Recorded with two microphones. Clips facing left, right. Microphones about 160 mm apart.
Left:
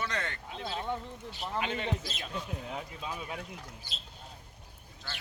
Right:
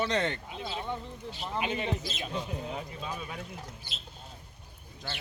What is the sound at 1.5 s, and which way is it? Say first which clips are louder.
Speech: right 2 dB; 10° right (ahead or behind).